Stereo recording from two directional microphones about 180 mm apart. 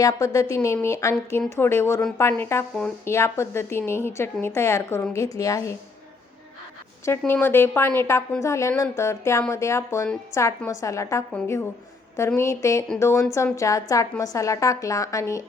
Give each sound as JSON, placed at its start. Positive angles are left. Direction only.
{"t": 0.0, "sound": "a woman's voice", "side_deg": 20}
{"t": 7.0, "sound": "a woman's voice", "side_deg": 15}